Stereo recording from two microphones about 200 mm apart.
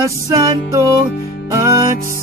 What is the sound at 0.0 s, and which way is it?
Music, 15° right (ahead or behind).